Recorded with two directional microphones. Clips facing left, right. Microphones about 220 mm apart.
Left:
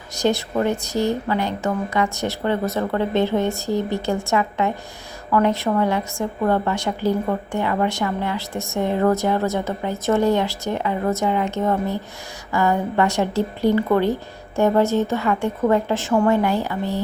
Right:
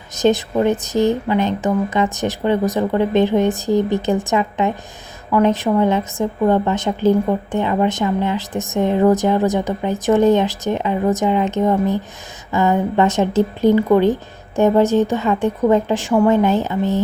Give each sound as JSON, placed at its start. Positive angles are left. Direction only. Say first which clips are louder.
{"t": 0.1, "sound": "a woman's voice", "louder": "right 5 dB", "side_deg": -20}